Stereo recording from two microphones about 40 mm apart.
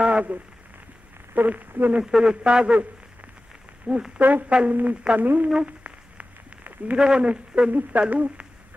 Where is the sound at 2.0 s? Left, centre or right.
Right.